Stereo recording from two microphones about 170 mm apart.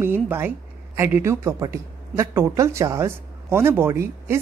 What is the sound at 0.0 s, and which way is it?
A woman's voice, 15° right (ahead or behind).